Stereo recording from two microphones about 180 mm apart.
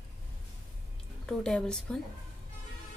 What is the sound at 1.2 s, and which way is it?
Speech, 5° left (ahead or behind).